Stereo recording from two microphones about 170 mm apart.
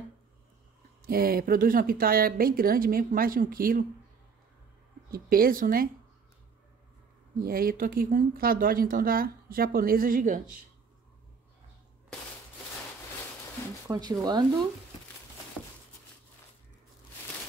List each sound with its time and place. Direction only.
1.0 s speech: 60° right (ahead or behind)
5.1 s speech: 60° right (ahead or behind)
7.4 s speech: 60° right (ahead or behind)
13.8 s speech: 25° right (ahead or behind)